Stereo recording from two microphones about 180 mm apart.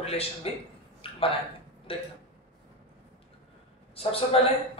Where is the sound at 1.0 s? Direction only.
30° left (ahead or behind).